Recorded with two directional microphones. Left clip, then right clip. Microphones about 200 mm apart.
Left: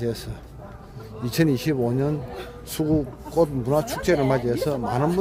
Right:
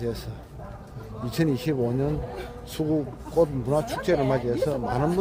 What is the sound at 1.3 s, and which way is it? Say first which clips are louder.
Speech: left 4 dB; 30° left (ahead or behind).